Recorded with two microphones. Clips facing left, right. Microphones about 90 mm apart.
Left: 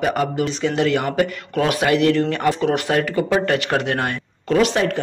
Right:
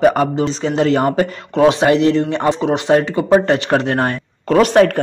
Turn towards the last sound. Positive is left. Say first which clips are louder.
# right 6 dB
turn(degrees=-45)  # may be behind; listen again after turning